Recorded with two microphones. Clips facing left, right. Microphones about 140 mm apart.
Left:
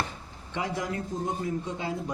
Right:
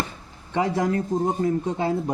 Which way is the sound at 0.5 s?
45° right (ahead or behind).